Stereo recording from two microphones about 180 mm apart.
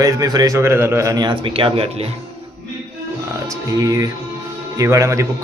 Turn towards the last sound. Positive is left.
turn(degrees=-15)  # may be behind; listen again after turning